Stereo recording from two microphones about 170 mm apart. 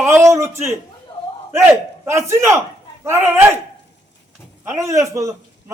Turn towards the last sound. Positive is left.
turn(degrees=-20)  # may be behind; listen again after turning